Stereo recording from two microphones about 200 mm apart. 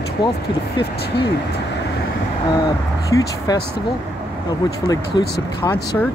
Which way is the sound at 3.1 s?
15° left (ahead or behind).